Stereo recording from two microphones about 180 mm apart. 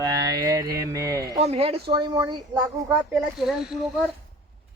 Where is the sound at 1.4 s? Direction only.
35° right (ahead or behind).